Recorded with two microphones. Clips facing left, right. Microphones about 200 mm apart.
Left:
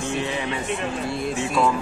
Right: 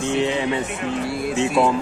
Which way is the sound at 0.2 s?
20° right (ahead or behind).